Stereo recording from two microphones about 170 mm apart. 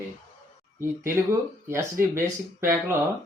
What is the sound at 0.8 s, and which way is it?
Speech, 15° right (ahead or behind).